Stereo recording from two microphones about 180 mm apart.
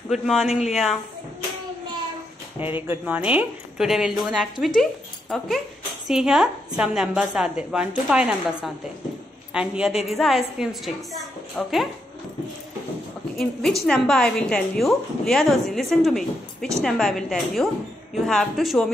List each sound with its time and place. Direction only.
0.1 s a woman's voice: centre (ahead or behind)
0.5 s speech: 40° left (ahead or behind)
2.6 s a woman's voice: 10° right (ahead or behind)
13.4 s a woman's voice: centre (ahead or behind)